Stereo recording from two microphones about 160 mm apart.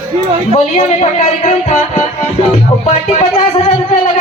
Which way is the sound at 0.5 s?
45° left (ahead or behind).